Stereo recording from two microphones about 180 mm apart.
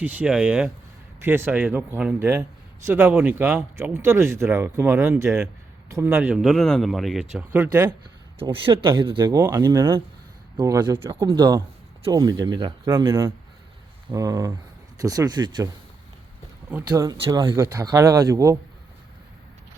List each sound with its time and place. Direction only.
0.0 s a man's voice: 10° right (ahead or behind)
6.4 s a man's voice: centre (ahead or behind)
8.4 s speech: 30° right (ahead or behind)
16.9 s a man's voice: 20° right (ahead or behind)